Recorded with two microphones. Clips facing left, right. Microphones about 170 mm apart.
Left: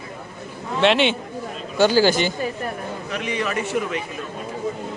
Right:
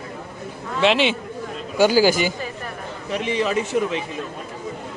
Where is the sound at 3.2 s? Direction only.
25° right (ahead or behind).